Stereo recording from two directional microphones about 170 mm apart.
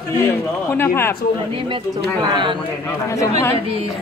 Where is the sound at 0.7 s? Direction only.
15° left (ahead or behind).